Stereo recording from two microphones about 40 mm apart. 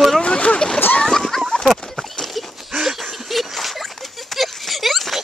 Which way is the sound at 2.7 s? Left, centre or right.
Centre.